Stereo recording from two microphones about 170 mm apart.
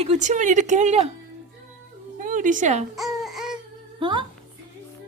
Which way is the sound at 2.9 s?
Centre (ahead or behind).